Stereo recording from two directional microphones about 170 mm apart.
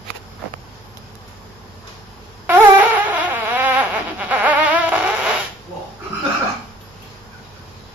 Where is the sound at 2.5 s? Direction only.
10° right (ahead or behind).